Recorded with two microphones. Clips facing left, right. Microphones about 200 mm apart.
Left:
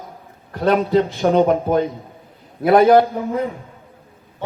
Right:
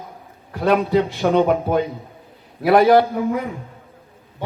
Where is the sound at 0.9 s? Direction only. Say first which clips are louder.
Left 2 dB; 10° right (ahead or behind).